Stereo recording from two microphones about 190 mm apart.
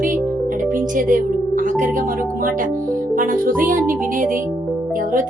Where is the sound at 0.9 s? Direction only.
45° right (ahead or behind).